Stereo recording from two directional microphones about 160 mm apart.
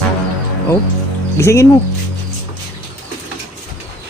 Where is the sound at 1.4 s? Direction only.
15° left (ahead or behind).